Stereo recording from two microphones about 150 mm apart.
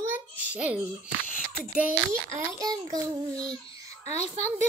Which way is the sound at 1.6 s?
10° right (ahead or behind).